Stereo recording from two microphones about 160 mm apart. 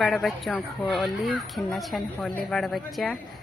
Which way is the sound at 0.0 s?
Centre (ahead or behind).